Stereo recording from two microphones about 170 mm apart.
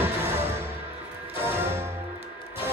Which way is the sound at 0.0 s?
10° right (ahead or behind).